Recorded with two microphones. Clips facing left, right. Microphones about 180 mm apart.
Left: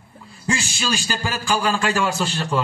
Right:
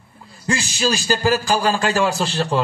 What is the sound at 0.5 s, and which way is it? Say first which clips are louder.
A man's voice: right 3 dB; 40° right (ahead or behind).